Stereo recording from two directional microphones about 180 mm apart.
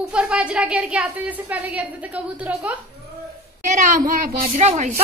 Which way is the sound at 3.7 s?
45° right (ahead or behind).